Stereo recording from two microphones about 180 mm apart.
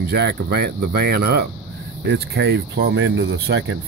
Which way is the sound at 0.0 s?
65° right (ahead or behind).